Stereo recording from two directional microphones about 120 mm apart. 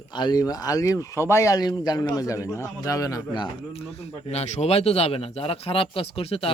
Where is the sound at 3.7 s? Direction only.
60° left (ahead or behind).